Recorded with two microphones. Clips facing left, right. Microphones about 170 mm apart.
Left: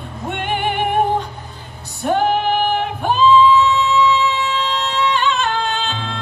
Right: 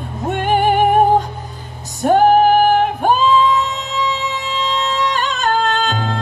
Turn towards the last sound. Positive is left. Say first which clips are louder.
# right 4 dB
turn(degrees=-45)  # may be behind; listen again after turning